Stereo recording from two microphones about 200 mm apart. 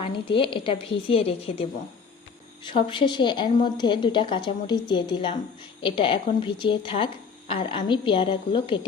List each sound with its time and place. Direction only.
0.0 s speech: 25° left (ahead or behind)
2.6 s speech: 25° left (ahead or behind)